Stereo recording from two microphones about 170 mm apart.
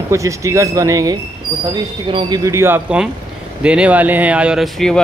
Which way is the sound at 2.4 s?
15° right (ahead or behind).